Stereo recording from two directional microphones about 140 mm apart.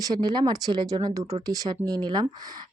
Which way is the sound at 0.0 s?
30° right (ahead or behind).